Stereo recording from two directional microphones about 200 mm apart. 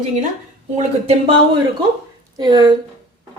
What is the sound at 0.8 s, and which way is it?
Speech, 30° right (ahead or behind).